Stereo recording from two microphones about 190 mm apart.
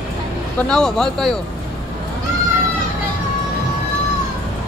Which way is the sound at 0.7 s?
Centre (ahead or behind).